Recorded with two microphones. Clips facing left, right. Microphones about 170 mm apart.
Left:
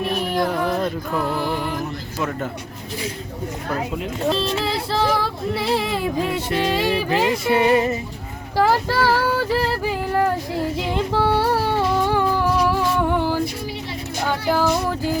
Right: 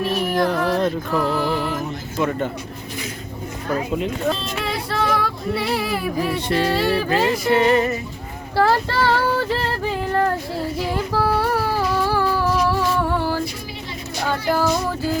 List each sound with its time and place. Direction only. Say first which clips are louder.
0.3 s music: right 2 dB; 5° left (ahead or behind)
3.9 s speech: even; centre (ahead or behind)
4.4 s child singing: left 4 dB; 30° left (ahead or behind)
6.3 s music: right 1 dB; 15° left (ahead or behind)
8.5 s a sound: even; 10° left (ahead or behind)
10.9 s music: left 2 dB; 25° left (ahead or behind)